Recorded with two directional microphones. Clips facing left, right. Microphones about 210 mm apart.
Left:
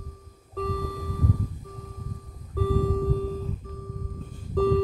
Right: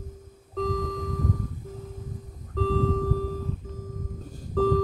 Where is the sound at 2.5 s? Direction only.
10° left (ahead or behind).